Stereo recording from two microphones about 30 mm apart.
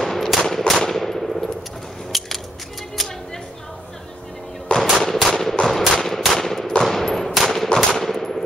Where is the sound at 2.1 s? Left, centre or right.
Centre.